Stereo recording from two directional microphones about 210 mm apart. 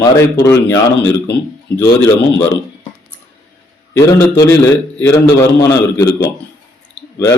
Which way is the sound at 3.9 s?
15° left (ahead or behind).